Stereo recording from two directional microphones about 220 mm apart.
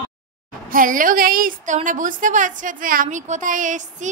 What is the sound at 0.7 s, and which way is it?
A woman's voice, 40° right (ahead or behind).